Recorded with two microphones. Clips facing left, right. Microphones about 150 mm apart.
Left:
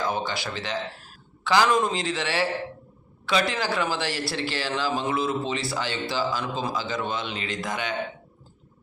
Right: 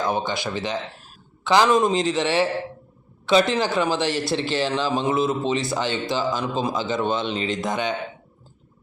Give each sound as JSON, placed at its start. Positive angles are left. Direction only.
{"t": 0.0, "sound": "speech", "side_deg": -20}